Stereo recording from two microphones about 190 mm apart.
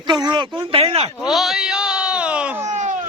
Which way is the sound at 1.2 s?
Centre (ahead or behind).